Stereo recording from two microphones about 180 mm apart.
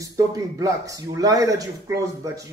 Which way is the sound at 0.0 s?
20° right (ahead or behind).